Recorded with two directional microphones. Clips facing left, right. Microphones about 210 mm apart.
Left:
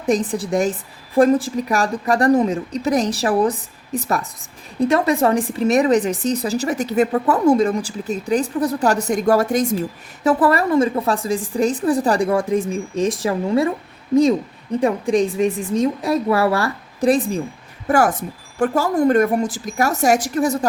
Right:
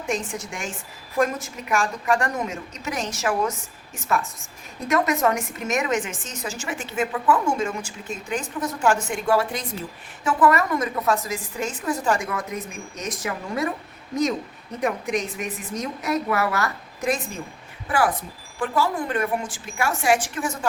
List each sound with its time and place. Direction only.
0.0 s a woman's voice: 35° left (ahead or behind)
10.2 s a woman's voice: 35° left (ahead or behind)
14.8 s a woman's voice: 30° left (ahead or behind)
17.8 s a woman's voice: 45° left (ahead or behind)